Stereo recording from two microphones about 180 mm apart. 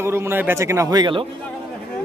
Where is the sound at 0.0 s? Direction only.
15° right (ahead or behind).